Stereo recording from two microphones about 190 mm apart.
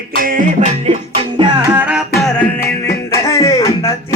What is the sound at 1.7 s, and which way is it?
Music, 5° right (ahead or behind).